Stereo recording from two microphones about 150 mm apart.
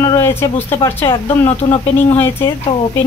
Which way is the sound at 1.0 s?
40° left (ahead or behind).